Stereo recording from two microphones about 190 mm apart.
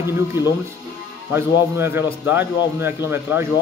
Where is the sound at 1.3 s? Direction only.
10° right (ahead or behind).